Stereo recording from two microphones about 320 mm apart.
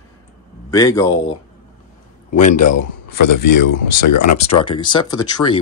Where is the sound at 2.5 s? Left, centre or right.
Left.